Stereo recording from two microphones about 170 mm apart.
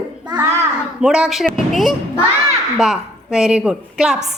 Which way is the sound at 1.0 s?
5° right (ahead or behind).